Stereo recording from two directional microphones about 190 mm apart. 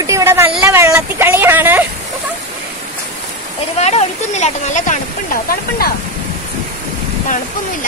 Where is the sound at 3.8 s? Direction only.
35° left (ahead or behind).